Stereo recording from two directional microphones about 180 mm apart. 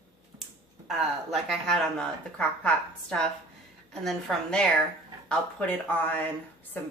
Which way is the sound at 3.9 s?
Centre (ahead or behind).